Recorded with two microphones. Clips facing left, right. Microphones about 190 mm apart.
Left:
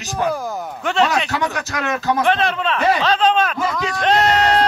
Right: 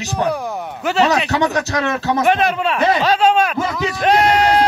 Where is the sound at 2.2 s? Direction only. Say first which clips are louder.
Right 2 dB; 10° right (ahead or behind).